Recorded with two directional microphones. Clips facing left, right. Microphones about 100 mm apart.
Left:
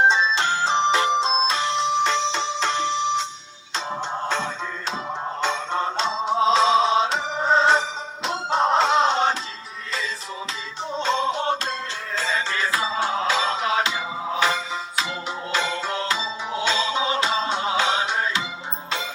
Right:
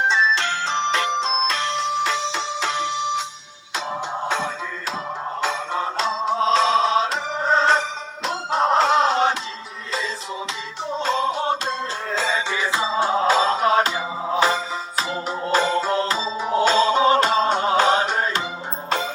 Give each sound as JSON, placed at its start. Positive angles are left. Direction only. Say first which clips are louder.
{"t": 0.1, "sound": "music", "louder": "even", "side_deg": 20}
{"t": 1.5, "sound": "music", "louder": "left 1 dB", "side_deg": 5}
{"t": 4.3, "sound": "music", "louder": "right 1 dB", "side_deg": -10}
{"t": 11.0, "sound": "music", "louder": "right 1 dB", "side_deg": -5}
{"t": 12.7, "sound": "music", "louder": "right 5 dB", "side_deg": -30}